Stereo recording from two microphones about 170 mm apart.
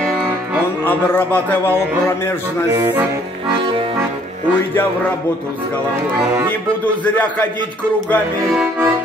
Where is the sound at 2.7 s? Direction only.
15° right (ahead or behind).